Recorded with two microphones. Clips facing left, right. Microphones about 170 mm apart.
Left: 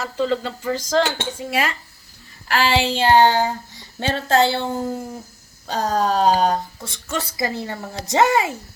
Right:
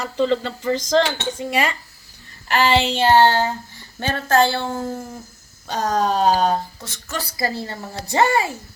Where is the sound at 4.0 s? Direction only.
25° left (ahead or behind).